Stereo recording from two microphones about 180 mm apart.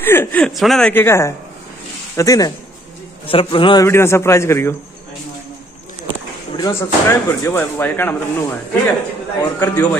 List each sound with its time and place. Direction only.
0.0 s a man's voice: 10° left (ahead or behind)
3.3 s a man's voice: 30° left (ahead or behind)
3.8 s speech: 15° left (ahead or behind)
6.5 s speech: 20° left (ahead or behind)